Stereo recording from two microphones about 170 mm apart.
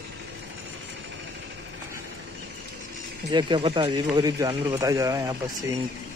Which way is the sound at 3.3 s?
25° right (ahead or behind).